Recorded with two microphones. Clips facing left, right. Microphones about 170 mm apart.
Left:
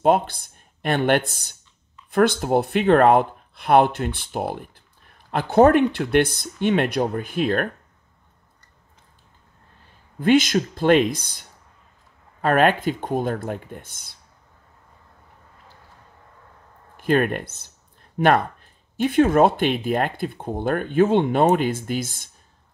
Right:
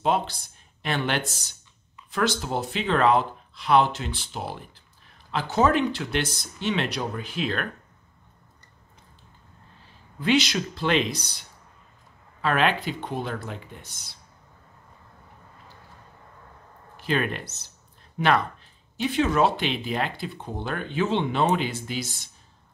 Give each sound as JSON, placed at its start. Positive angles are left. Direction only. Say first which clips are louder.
{"t": 0.0, "sound": "speech", "louder": "left 6 dB", "side_deg": 50}
{"t": 10.1, "sound": "speech", "louder": "left 6 dB", "side_deg": 50}
{"t": 16.9, "sound": "speech", "louder": "left 6 dB", "side_deg": 50}